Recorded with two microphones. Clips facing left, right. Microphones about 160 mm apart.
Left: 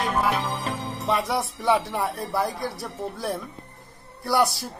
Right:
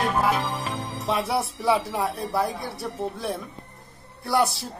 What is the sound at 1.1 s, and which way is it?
Music, 30° right (ahead or behind).